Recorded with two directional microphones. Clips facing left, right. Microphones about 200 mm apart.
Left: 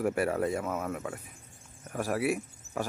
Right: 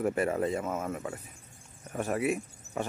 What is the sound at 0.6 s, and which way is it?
Speech, 5° right (ahead or behind).